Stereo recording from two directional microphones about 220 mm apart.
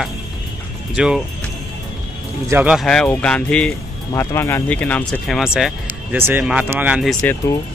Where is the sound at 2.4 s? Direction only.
10° right (ahead or behind).